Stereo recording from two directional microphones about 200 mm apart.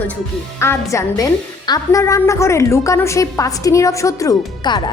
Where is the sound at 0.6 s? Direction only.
15° left (ahead or behind).